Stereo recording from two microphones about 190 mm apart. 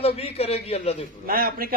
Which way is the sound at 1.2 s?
50° right (ahead or behind).